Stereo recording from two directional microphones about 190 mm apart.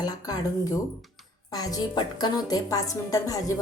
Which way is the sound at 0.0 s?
20° left (ahead or behind).